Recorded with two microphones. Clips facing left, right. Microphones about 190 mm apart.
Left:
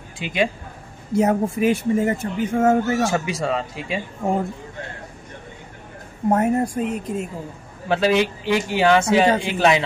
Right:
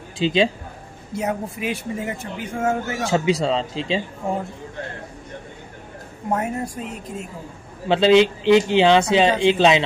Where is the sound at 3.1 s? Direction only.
25° right (ahead or behind).